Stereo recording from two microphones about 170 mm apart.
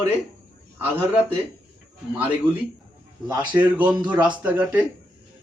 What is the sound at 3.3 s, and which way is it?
Speech, 10° right (ahead or behind).